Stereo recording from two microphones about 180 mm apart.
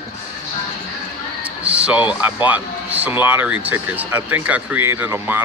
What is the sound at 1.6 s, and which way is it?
Music, 5° right (ahead or behind).